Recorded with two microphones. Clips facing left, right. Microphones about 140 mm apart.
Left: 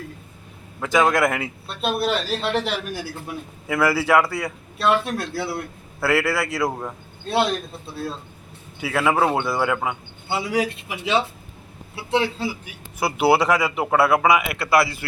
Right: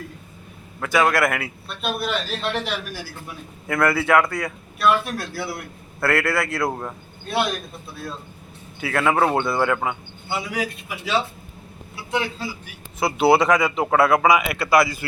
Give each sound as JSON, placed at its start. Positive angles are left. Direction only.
{"t": 0.8, "sound": "a man's voice", "side_deg": 20}
{"t": 1.7, "sound": "speech", "side_deg": 30}
{"t": 3.7, "sound": "speech", "side_deg": 10}
{"t": 4.8, "sound": "a man's voice", "side_deg": 25}
{"t": 6.0, "sound": "speech", "side_deg": 10}
{"t": 7.3, "sound": "speech", "side_deg": 30}
{"t": 8.8, "sound": "speech", "side_deg": 10}
{"t": 10.2, "sound": "a man's voice", "side_deg": 30}
{"t": 13.0, "sound": "speech", "side_deg": 10}